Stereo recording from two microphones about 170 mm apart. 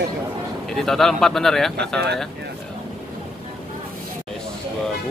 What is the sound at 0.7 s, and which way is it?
Speech, centre (ahead or behind).